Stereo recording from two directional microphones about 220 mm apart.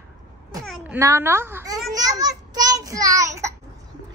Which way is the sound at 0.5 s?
15° right (ahead or behind).